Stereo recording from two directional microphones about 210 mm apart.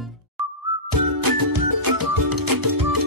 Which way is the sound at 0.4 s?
Centre (ahead or behind).